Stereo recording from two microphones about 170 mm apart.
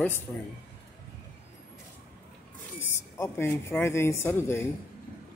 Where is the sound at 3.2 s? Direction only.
15° left (ahead or behind).